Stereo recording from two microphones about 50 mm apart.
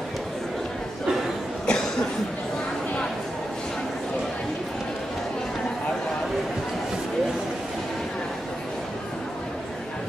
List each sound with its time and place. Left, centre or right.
1.7 s cough: centre